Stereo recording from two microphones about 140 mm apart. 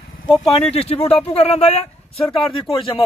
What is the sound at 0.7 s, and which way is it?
Speech, 45° left (ahead or behind).